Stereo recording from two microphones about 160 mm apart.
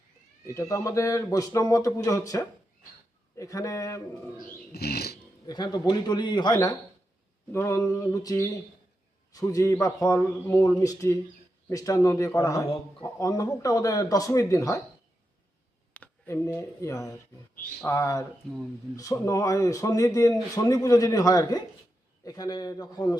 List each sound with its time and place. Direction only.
0.4 s speech: 20° left (ahead or behind)
4.7 s music: 85° left
5.5 s speech: 25° left (ahead or behind)
7.5 s mantra: 15° left (ahead or behind)
7.9 s speech: 20° left (ahead or behind)
15.9 s speech: 10° left (ahead or behind)